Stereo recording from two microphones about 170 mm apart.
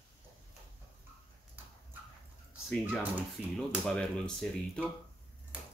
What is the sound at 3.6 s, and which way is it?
Speech, centre (ahead or behind).